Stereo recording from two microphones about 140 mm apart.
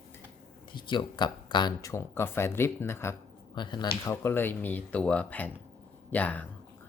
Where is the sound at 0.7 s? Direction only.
35° left (ahead or behind).